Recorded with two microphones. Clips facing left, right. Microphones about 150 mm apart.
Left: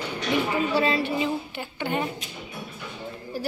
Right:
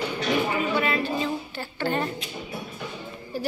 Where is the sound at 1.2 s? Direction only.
15° left (ahead or behind).